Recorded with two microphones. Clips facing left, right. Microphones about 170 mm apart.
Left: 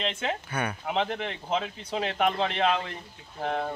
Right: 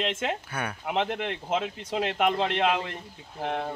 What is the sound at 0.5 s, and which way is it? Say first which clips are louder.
Speech: left 1 dB; 5° right (ahead or behind).